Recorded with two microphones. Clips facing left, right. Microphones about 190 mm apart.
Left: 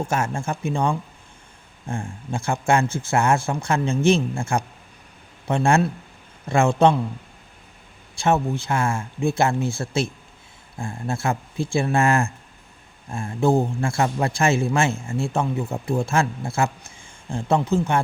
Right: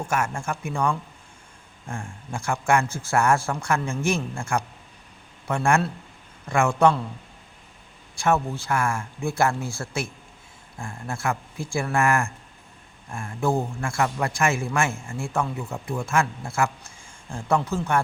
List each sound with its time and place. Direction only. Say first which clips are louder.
0.1 s a man's voice: left 2 dB; 25° left (ahead or behind)
8.2 s a man's voice: left 2 dB; 20° left (ahead or behind)